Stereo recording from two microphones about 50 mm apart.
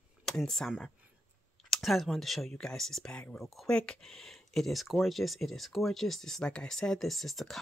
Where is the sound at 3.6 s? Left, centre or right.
Centre.